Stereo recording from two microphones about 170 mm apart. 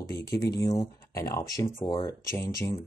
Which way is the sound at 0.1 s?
20° left (ahead or behind).